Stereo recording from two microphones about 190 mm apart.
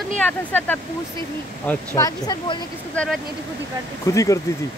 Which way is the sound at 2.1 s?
20° left (ahead or behind).